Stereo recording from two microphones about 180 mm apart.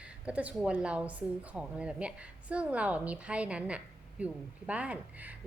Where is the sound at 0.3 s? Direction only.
5° right (ahead or behind).